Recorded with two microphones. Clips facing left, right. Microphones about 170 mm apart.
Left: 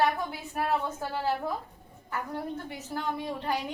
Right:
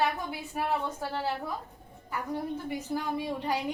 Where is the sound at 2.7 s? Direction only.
15° right (ahead or behind).